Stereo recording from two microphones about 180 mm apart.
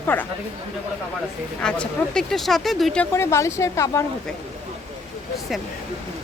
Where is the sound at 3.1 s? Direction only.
15° left (ahead or behind).